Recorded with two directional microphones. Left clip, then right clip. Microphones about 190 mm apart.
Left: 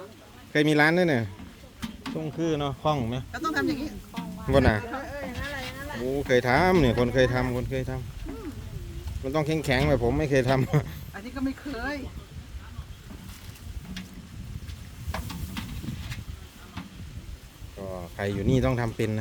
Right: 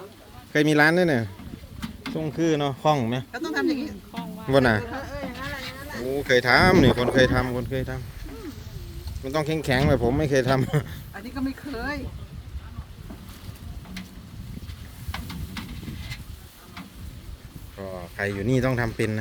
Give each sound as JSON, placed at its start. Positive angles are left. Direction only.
{"t": 0.5, "sound": "speech", "side_deg": -10}
{"t": 2.1, "sound": "speech", "side_deg": -20}
{"t": 3.3, "sound": "speech", "side_deg": 10}
{"t": 4.4, "sound": "speech", "side_deg": -10}
{"t": 4.9, "sound": "speech", "side_deg": -65}
{"t": 6.1, "sound": "speech", "side_deg": -5}
{"t": 15.1, "sound": "a sound", "side_deg": 0}
{"t": 17.7, "sound": "speech", "side_deg": -5}